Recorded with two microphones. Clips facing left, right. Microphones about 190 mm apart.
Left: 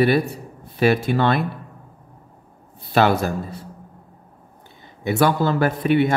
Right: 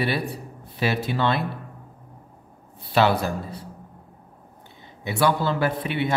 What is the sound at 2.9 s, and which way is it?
Speech, 50° left (ahead or behind).